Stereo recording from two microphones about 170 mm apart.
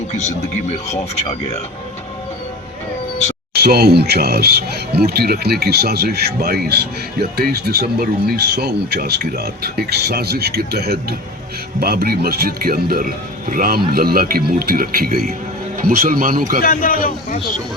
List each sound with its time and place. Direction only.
0.1 s speech: 40° left (ahead or behind)
3.5 s speech: 70° right (ahead or behind)
16.6 s a man's voice: 60° left (ahead or behind)